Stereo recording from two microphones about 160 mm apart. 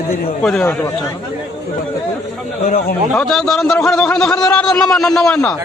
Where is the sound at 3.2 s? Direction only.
Centre (ahead or behind).